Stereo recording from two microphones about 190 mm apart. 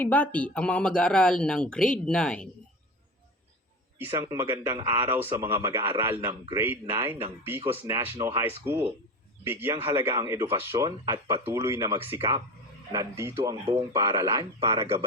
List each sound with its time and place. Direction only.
0.0 s speech: 10° left (ahead or behind)
3.9 s speech: 15° right (ahead or behind)